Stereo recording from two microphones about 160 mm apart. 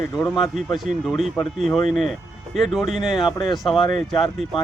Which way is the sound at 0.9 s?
Centre (ahead or behind).